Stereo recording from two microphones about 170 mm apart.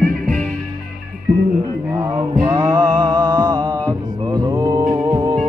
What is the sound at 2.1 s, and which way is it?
Mantra, 15° right (ahead or behind).